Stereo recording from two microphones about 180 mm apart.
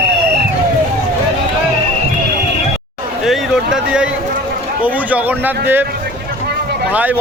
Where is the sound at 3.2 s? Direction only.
Centre (ahead or behind).